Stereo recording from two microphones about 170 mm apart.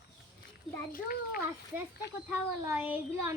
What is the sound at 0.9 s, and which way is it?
Speech, 55° left (ahead or behind).